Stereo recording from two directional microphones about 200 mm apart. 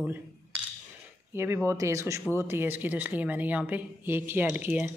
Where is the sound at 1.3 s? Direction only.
10° right (ahead or behind).